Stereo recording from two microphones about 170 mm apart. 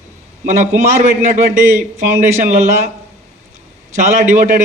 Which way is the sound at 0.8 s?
40° right (ahead or behind).